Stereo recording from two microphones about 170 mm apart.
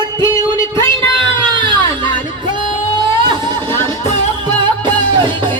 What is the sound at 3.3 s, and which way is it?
Music, 25° right (ahead or behind).